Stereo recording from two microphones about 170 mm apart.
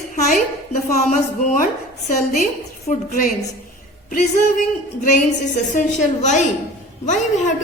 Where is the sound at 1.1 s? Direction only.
50° left (ahead or behind).